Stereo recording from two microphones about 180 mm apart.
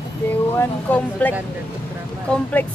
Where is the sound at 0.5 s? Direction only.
10° left (ahead or behind).